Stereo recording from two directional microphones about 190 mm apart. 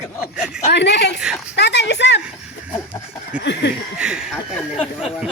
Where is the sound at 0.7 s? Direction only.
65° left (ahead or behind).